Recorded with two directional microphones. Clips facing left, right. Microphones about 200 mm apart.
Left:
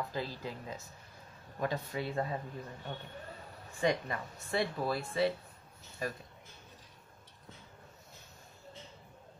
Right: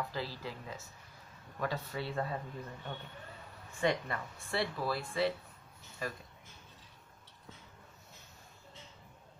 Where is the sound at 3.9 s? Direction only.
20° left (ahead or behind).